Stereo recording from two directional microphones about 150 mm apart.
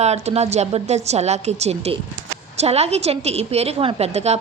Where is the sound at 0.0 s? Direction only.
45° right (ahead or behind).